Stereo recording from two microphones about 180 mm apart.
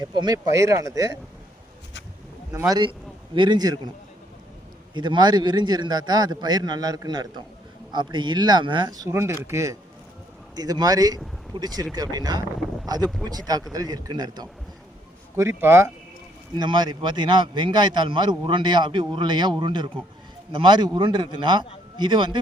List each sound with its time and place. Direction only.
0.0 s a man's voice: 25° right (ahead or behind)
2.5 s a man's voice: 20° right (ahead or behind)
4.9 s a man's voice: 25° right (ahead or behind)
12.8 s wind noise: 20° right (ahead or behind)
13.2 s a man's voice: 20° right (ahead or behind)
16.6 s a man's voice: 25° right (ahead or behind)